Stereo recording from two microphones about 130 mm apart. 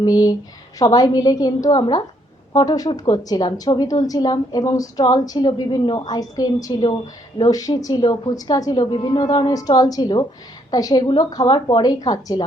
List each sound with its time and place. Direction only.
0.0 s a woman's voice: 30° left (ahead or behind)